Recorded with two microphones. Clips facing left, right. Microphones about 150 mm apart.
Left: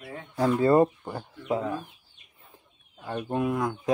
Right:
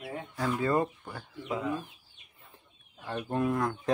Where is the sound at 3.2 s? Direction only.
15° left (ahead or behind).